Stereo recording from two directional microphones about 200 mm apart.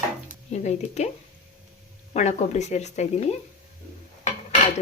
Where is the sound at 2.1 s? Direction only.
35° left (ahead or behind).